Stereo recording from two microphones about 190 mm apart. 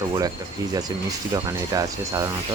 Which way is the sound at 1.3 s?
20° right (ahead or behind).